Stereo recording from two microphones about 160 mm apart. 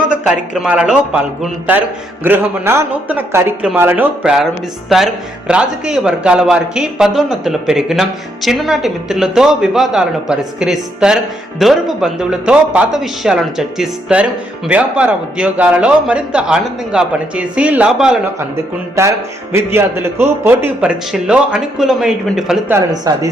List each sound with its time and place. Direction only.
0.1 s a man's voice: 5° right (ahead or behind)
18.3 s a man's voice: 15° right (ahead or behind)
22.7 s speech: 20° right (ahead or behind)